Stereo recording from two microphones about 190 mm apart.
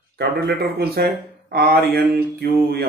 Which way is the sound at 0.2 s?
55° right (ahead or behind).